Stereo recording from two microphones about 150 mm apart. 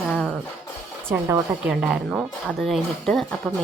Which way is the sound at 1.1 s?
15° right (ahead or behind).